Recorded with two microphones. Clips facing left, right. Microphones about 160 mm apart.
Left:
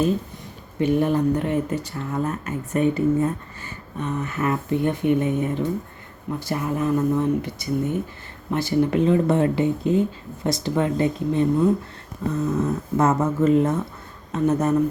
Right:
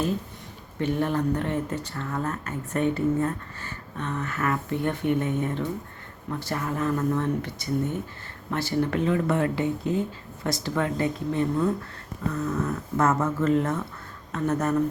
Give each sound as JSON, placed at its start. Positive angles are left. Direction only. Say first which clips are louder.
{"t": 0.8, "sound": "speech", "louder": "left 5 dB", "side_deg": 15}